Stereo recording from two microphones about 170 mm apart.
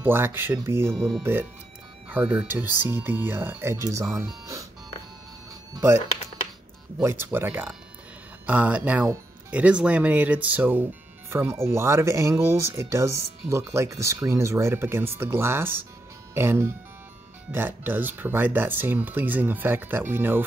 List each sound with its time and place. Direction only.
0.0 s speech: 15° right (ahead or behind)
0.9 s speech: centre (ahead or behind)
1.2 s speech: 10° right (ahead or behind)
5.8 s speech: 15° right (ahead or behind)